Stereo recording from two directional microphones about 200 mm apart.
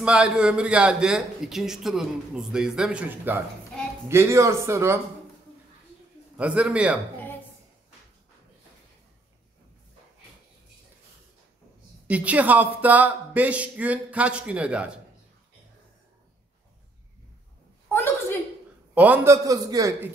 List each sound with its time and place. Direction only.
0.0 s a man's voice: 5° right (ahead or behind)
6.3 s a man's voice: 5° right (ahead or behind)
12.1 s speech: 5° right (ahead or behind)
17.8 s a sound: 10° left (ahead or behind)
18.9 s speech: 10° right (ahead or behind)